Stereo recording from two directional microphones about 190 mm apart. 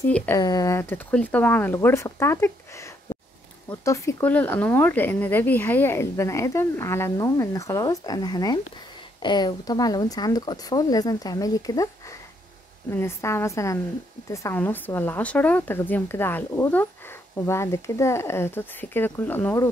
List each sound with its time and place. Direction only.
0.4 s speech: 20° left (ahead or behind)
12.9 s speech: 15° left (ahead or behind)